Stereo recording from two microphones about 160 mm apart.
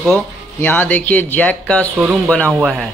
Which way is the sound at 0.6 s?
10° left (ahead or behind).